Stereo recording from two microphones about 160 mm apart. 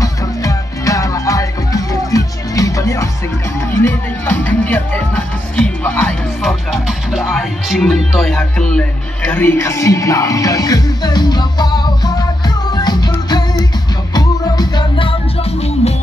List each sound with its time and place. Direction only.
0.0 s music: 20° left (ahead or behind)
15.8 s music: 40° left (ahead or behind)